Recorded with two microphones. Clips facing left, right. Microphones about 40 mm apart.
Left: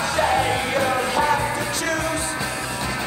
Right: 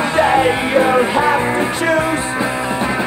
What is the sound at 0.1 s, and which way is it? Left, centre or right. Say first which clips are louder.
Music: right 7 dB; right.